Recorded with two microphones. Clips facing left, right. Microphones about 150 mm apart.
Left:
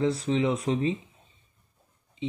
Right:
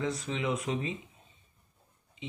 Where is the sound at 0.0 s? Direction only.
30° left (ahead or behind).